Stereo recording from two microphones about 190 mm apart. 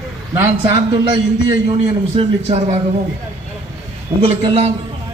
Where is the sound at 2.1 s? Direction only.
30° right (ahead or behind).